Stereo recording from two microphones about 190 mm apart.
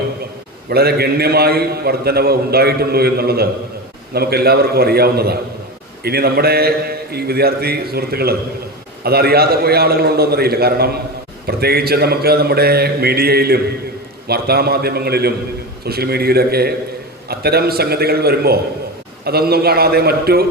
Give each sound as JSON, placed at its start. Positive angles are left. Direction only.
{"t": 0.7, "sound": "a man's voice", "side_deg": -55}